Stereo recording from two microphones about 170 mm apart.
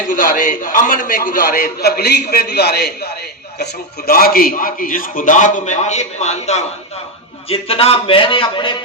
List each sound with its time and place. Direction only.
0.1 s a man's voice: 55° left (ahead or behind); by 8.7 s 30° left (ahead or behind)